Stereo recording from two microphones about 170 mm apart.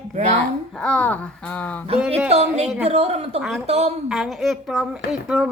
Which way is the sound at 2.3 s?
40° right (ahead or behind).